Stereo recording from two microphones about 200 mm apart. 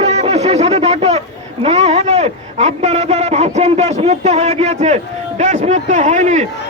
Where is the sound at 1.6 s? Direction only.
30° right (ahead or behind).